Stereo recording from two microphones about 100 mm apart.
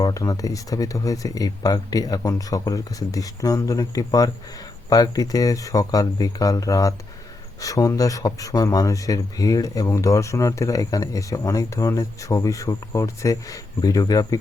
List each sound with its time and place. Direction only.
0.0 s speech: 35° left (ahead or behind)